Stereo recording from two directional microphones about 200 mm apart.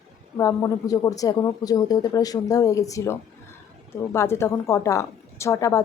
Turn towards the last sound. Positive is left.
turn(degrees=15)  # may be behind; listen again after turning